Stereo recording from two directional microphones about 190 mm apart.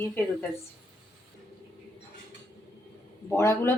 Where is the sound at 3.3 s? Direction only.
15° left (ahead or behind).